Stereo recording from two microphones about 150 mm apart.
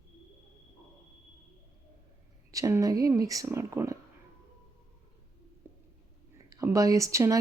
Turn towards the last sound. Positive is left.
turn(degrees=-20)  # may be behind; listen again after turning